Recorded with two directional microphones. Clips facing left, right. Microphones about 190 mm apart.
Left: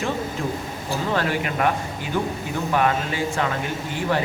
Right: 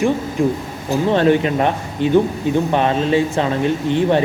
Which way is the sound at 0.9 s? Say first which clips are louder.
Right 10 dB; 25° right (ahead or behind).